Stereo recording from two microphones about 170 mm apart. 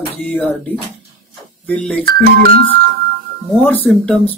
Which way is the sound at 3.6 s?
10° left (ahead or behind).